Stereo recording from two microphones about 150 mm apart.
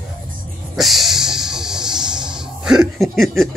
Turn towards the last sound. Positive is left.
turn(degrees=0)  # may be behind; listen again after turning